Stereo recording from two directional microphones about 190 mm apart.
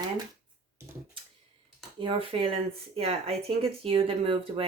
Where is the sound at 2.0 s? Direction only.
30° right (ahead or behind).